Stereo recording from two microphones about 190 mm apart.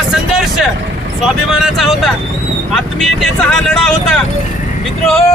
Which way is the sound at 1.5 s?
Centre (ahead or behind).